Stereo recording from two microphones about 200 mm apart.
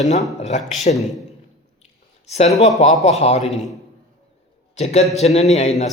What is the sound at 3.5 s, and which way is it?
Speech, centre (ahead or behind).